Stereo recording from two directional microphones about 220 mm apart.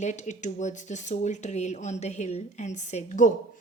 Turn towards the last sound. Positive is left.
turn(degrees=35)  # may be behind; listen again after turning